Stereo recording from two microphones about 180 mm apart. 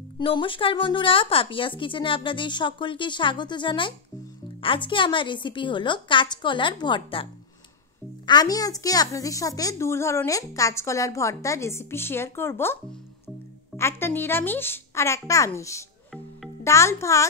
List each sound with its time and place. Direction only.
0.2 s a woman's voice: 30° left (ahead or behind)
8.3 s a woman's voice: 20° left (ahead or behind)
13.7 s a woman's voice: 15° left (ahead or behind)